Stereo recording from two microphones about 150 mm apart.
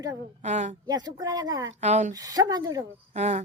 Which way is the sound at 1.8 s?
50° right (ahead or behind).